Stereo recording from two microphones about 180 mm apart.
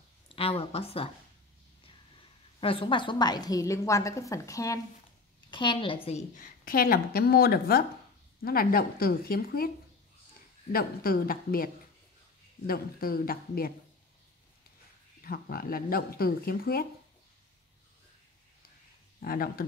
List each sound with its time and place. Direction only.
0.4 s speech: 35° left (ahead or behind)
2.6 s a woman's voice: 30° left (ahead or behind)
6.0 s a woman's voice: 45° left (ahead or behind)
10.7 s a woman's voice: 55° left (ahead or behind)
15.2 s a woman's voice: 55° left (ahead or behind)
19.1 s speech: 55° left (ahead or behind)